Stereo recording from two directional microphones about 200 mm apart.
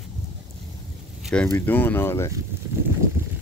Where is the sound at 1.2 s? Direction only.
5° left (ahead or behind).